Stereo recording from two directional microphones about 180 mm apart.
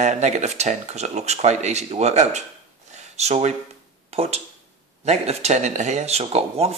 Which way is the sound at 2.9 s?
40° right (ahead or behind).